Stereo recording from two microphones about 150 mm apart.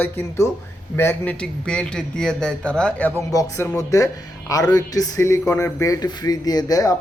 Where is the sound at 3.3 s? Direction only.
20° left (ahead or behind).